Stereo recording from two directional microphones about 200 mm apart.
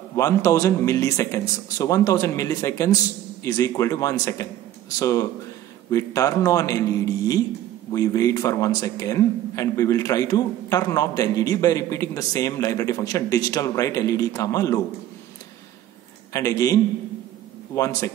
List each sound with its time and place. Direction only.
0.1 s speech: 15° left (ahead or behind)
16.3 s speech: 15° left (ahead or behind)